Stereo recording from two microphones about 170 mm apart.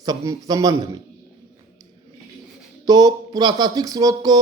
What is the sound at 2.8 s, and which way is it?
Speech, 25° right (ahead or behind).